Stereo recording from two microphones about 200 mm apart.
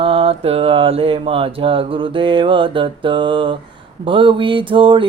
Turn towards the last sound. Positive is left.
turn(degrees=-25)  # may be behind; listen again after turning